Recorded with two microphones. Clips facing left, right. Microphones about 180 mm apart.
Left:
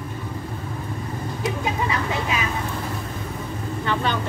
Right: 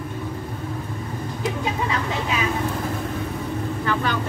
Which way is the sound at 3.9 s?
25° left (ahead or behind).